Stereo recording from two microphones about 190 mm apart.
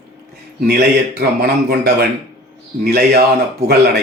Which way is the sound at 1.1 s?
55° right (ahead or behind).